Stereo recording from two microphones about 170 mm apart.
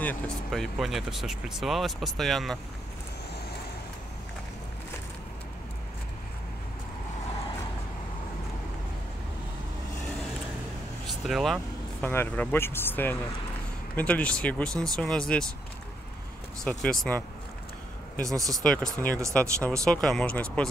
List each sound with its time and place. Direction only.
0.0 s speech: 5° left (ahead or behind)
11.2 s vehicle: centre (ahead or behind)
12.1 s speech: 10° left (ahead or behind)
16.6 s speech: 5° left (ahead or behind)
18.2 s speech: 20° right (ahead or behind)
18.5 s speech: 5° left (ahead or behind)